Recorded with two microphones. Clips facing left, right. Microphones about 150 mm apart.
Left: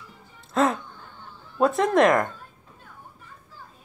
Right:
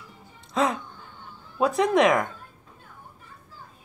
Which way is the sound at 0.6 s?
Centre (ahead or behind).